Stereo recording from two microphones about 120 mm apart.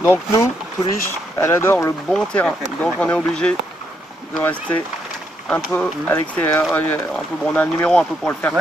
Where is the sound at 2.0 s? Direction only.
5° left (ahead or behind).